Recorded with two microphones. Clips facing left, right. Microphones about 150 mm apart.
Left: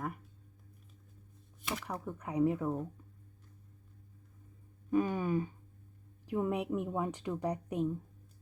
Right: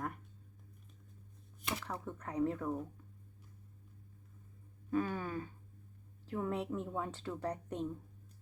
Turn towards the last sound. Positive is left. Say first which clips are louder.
# left 4 dB
turn(degrees=10)  # may be behind; listen again after turning